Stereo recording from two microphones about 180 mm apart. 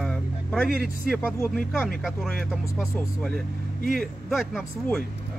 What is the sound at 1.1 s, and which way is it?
Speech, 5° left (ahead or behind).